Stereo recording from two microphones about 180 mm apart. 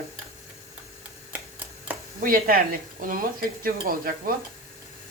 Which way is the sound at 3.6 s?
55° right (ahead or behind).